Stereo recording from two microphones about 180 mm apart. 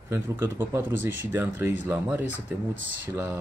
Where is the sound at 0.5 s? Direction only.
15° right (ahead or behind).